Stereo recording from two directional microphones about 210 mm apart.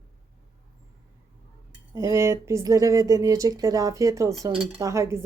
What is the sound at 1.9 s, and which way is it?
A woman's voice, 15° right (ahead or behind).